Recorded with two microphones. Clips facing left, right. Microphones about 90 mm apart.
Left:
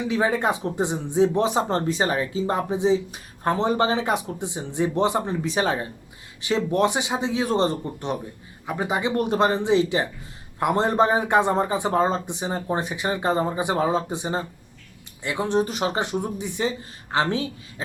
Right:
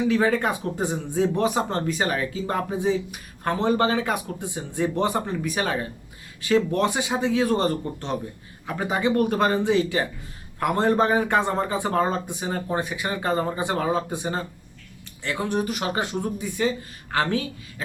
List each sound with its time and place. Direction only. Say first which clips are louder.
0.1 s speech: right 1 dB; 20° left (ahead or behind)